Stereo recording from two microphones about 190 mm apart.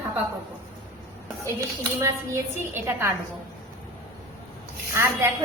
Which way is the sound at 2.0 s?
15° right (ahead or behind).